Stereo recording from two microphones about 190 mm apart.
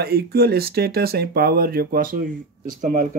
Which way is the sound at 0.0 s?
55° right (ahead or behind).